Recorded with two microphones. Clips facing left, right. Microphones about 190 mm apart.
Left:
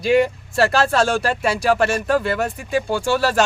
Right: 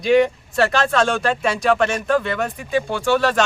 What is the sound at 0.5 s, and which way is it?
Speech, 35° left (ahead or behind).